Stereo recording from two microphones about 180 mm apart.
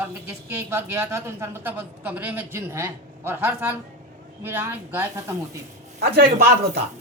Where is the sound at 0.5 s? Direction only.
15° right (ahead or behind).